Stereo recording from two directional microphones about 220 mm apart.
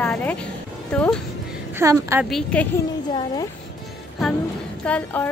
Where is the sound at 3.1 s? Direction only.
20° left (ahead or behind).